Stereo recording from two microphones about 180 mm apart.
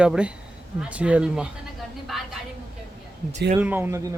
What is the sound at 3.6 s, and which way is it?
Speech, 10° right (ahead or behind).